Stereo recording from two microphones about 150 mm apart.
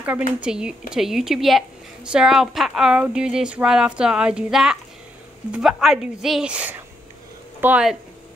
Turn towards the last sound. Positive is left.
turn(degrees=-10)  # may be behind; listen again after turning